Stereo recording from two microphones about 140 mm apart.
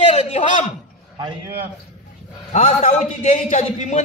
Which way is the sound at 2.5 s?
60° left (ahead or behind).